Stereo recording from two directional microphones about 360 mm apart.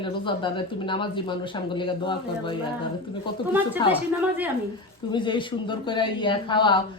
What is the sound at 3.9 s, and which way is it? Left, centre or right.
Speech, centre.